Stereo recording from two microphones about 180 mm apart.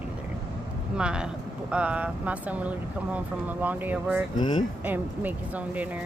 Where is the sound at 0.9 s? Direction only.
5° right (ahead or behind).